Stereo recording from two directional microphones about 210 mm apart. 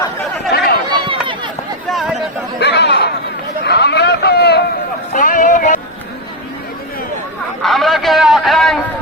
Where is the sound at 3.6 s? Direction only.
50° left (ahead or behind).